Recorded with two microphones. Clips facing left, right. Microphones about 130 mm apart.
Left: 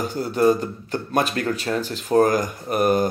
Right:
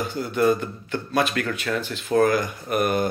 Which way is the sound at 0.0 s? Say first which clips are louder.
Left 2 dB; 40° left (ahead or behind).